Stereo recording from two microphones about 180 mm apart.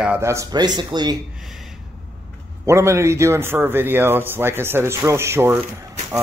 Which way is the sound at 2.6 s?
15° right (ahead or behind).